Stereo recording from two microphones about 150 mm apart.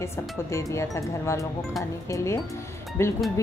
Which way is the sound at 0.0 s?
20° left (ahead or behind).